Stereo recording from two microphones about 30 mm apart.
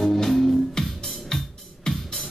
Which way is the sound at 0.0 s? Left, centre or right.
Centre.